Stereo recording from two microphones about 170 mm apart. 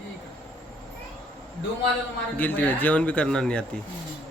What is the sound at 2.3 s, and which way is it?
Speech, 10° left (ahead or behind).